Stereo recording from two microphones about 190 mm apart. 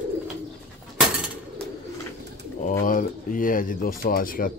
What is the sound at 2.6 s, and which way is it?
Speech, 45° left (ahead or behind).